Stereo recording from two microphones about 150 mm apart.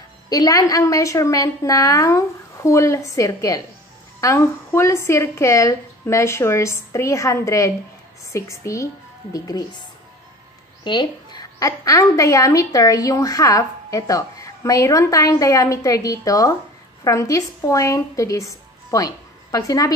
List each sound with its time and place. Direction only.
0.3 s a woman's voice: 25° left (ahead or behind)
10.8 s a woman's voice: 30° left (ahead or behind)